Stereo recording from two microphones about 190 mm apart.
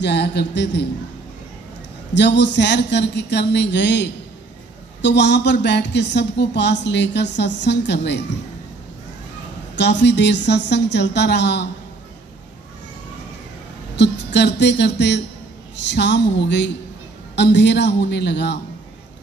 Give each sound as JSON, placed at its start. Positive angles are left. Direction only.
{"t": 0.0, "sound": "speech", "side_deg": 65}
{"t": 2.1, "sound": "speech", "side_deg": 65}
{"t": 9.8, "sound": "speech", "side_deg": 65}
{"t": 13.9, "sound": "speech", "side_deg": 65}